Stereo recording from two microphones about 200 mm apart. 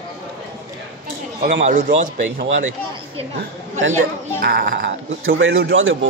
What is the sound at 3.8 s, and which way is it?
Speech, 80° right.